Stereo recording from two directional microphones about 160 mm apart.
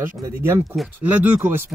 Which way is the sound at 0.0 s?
15° right (ahead or behind).